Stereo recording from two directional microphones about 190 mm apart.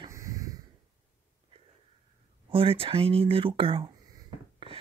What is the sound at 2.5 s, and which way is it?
Speech, 30° right (ahead or behind).